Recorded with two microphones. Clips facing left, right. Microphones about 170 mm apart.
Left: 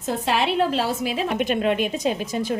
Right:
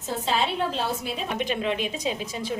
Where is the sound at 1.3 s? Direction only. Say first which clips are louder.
Left 5 dB; 55° left (ahead or behind).